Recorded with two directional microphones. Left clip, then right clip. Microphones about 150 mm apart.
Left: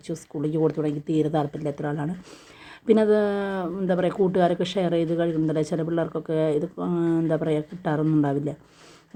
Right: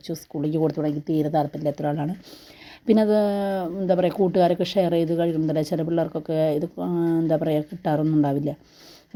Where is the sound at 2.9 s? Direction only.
35° right (ahead or behind).